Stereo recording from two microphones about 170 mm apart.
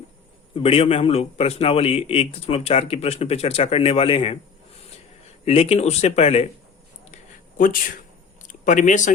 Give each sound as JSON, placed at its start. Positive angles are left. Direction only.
{"t": 0.5, "sound": "a man's voice", "side_deg": 35}
{"t": 5.5, "sound": "a man's voice", "side_deg": 35}
{"t": 7.6, "sound": "speech", "side_deg": 55}
{"t": 8.4, "sound": "a sound", "side_deg": 50}